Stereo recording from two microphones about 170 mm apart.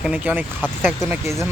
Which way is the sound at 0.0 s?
10° right (ahead or behind).